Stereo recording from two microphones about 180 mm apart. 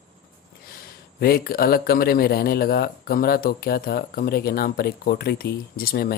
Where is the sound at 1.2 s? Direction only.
55° left (ahead or behind).